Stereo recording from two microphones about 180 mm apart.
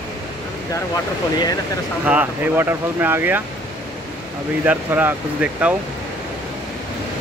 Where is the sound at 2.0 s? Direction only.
10° right (ahead or behind).